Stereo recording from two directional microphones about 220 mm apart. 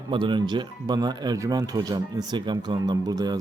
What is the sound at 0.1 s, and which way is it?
Speech, 20° right (ahead or behind).